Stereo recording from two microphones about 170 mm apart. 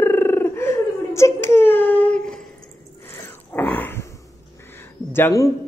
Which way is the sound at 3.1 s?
10° left (ahead or behind).